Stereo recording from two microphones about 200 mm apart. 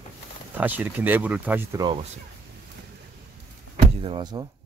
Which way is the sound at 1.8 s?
25° right (ahead or behind).